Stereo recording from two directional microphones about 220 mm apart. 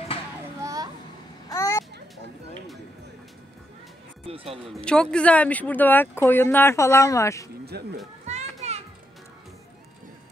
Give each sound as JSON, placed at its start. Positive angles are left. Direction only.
{"t": 0.6, "sound": "children playing", "side_deg": -15}
{"t": 1.5, "sound": "a sound", "side_deg": 15}
{"t": 4.3, "sound": "speech", "side_deg": -25}
{"t": 4.8, "sound": "speech", "side_deg": 5}
{"t": 7.7, "sound": "speech", "side_deg": -45}
{"t": 8.3, "sound": "children playing", "side_deg": -30}